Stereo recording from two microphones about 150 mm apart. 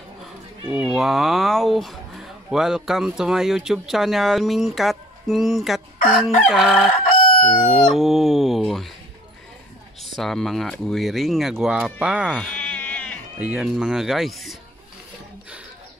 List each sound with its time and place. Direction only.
0.2 s speech: 5° right (ahead or behind)
6.9 s chicken: 40° left (ahead or behind)
7.9 s speech: centre (ahead or behind)
10.1 s speech: centre (ahead or behind)
12.5 s sheep: 10° left (ahead or behind)
13.4 s speech: 5° right (ahead or behind)